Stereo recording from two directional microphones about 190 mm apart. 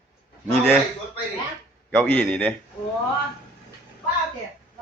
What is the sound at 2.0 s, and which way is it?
Speech, 10° left (ahead or behind).